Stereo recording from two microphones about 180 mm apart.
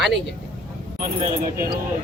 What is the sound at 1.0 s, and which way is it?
Speech, 50° right (ahead or behind).